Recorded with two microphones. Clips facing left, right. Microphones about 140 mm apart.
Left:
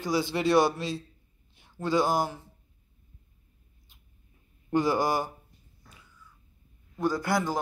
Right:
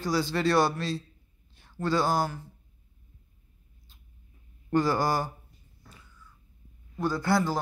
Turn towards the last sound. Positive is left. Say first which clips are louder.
# right 1 dB
turn(degrees=15)  # may be behind; listen again after turning